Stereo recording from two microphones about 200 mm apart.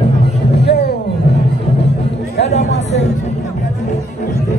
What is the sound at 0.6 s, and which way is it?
Music, 55° left (ahead or behind).